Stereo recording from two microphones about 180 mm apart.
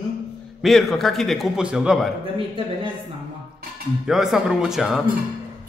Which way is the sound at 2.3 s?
30° right (ahead or behind).